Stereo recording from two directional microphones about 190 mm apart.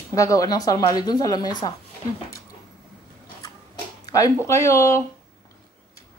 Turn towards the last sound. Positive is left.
turn(degrees=15)  # may be behind; listen again after turning